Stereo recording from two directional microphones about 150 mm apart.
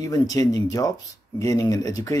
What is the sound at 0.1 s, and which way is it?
Speech, 25° left (ahead or behind).